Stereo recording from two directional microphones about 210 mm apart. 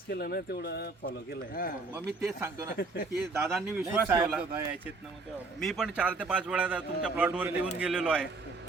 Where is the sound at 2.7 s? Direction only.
50° left (ahead or behind).